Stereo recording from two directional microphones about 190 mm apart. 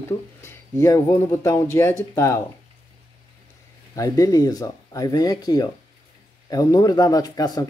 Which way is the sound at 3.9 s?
20° left (ahead or behind).